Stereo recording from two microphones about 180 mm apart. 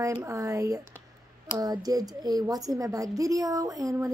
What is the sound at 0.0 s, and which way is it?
A woman's voice, 15° right (ahead or behind).